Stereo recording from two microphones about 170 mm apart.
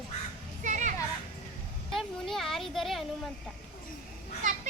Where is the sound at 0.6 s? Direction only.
45° right (ahead or behind).